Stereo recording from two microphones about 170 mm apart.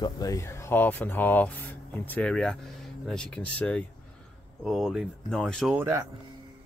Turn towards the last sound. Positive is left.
turn(degrees=-15)  # may be behind; listen again after turning